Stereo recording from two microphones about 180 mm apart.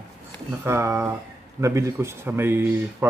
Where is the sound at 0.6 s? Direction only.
15° right (ahead or behind).